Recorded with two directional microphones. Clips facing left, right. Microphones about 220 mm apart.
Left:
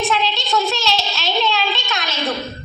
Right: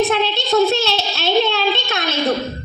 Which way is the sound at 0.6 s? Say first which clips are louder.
Right 5 dB; 55° right (ahead or behind).